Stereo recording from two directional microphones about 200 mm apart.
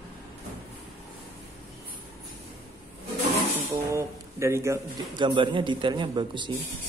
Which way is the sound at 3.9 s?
15° right (ahead or behind).